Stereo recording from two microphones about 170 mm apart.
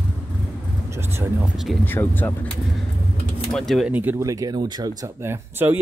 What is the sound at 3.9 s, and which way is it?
Speech, 10° right (ahead or behind).